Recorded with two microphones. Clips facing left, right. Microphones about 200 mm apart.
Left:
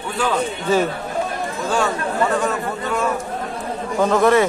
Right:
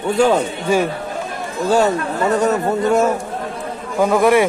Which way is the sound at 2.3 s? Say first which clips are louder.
Right 5 dB; 40° right (ahead or behind).